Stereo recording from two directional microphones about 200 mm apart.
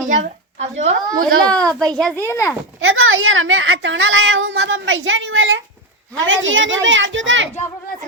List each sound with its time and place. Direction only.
0.1 s a sound: 35° right (ahead or behind)
1.5 s a child's voice: 5° left (ahead or behind)
2.8 s a woman's voice: 85° right; by 7.5 s 70° right (ahead or behind)